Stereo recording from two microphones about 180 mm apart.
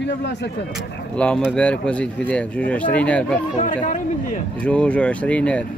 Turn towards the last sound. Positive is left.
turn(degrees=5)  # may be behind; listen again after turning